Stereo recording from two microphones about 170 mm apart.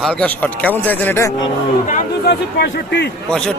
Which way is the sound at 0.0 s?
5° left (ahead or behind).